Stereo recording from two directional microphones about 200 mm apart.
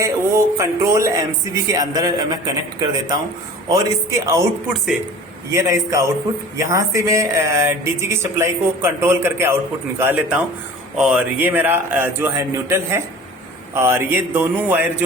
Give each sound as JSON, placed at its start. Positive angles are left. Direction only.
{"t": 0.0, "sound": "a sound", "side_deg": -15}
{"t": 1.6, "sound": "a man's voice", "side_deg": -20}
{"t": 5.5, "sound": "speech", "side_deg": -15}